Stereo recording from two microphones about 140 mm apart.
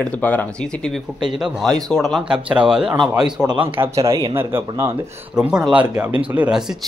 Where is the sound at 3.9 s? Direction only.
20° right (ahead or behind).